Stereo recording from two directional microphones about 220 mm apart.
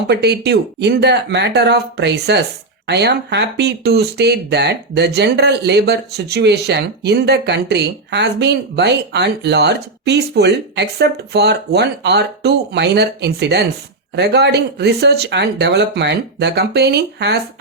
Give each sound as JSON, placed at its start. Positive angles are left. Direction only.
{"t": 0.1, "sound": "speech", "side_deg": -50}